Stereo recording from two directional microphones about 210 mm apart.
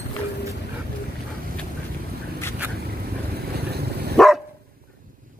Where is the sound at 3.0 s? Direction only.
50° right (ahead or behind).